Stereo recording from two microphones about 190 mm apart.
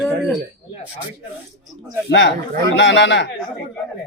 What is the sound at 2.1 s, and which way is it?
Speech, 70° left (ahead or behind).